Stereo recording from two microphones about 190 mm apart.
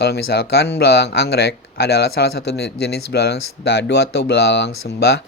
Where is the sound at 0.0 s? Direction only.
55° left (ahead or behind).